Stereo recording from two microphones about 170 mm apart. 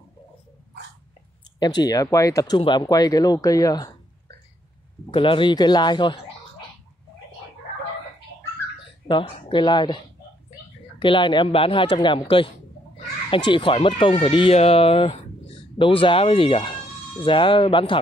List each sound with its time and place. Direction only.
1.8 s speech: 20° left (ahead or behind)
5.1 s speech: 30° left (ahead or behind)
9.0 s speech: 30° left (ahead or behind)